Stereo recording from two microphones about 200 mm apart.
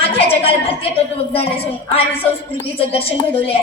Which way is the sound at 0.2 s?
30° left (ahead or behind).